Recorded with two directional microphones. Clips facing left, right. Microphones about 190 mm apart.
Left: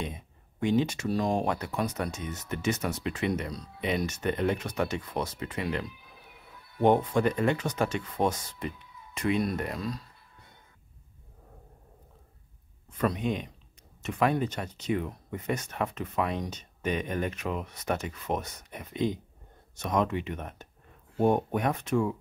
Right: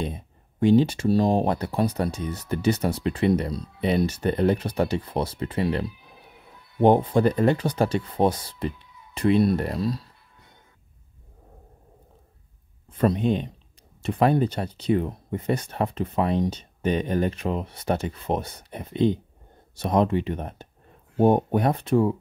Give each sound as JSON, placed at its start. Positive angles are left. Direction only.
{"t": 0.0, "sound": "speech", "side_deg": -35}
{"t": 12.9, "sound": "speech", "side_deg": -30}